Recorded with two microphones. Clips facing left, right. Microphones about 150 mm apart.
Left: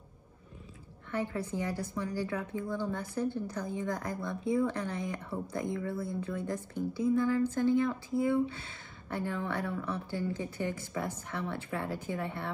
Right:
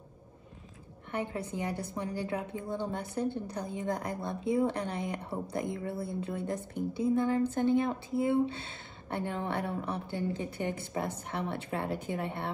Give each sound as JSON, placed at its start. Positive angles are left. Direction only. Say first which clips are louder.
{"t": 1.1, "sound": "speech", "louder": "left 1 dB", "side_deg": -20}
{"t": 9.8, "sound": "speech", "louder": "right 1 dB", "side_deg": -60}
{"t": 10.1, "sound": "speech", "louder": "right 1 dB", "side_deg": -20}